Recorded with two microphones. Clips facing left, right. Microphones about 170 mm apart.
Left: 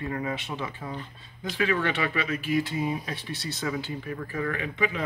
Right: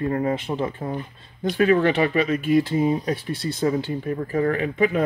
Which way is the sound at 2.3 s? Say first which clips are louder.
Right 8 dB; 50° right (ahead or behind).